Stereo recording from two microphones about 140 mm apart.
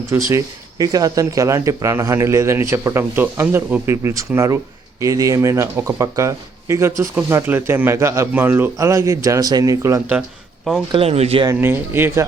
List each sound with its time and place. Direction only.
0.3 s speech: 25° right (ahead or behind)
10.9 s speech: 45° right (ahead or behind)
11.6 s speech: 15° right (ahead or behind)